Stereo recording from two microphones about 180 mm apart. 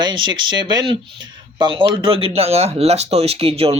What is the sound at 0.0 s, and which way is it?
Speech, 25° right (ahead or behind).